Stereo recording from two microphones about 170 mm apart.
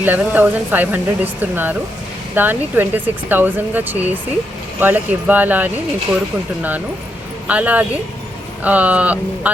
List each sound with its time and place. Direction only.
0.0 s speech: 10° right (ahead or behind)